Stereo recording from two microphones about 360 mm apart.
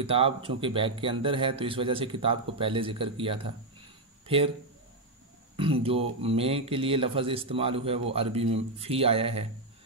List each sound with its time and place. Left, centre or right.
0.0 s speech: centre
5.6 s speech: centre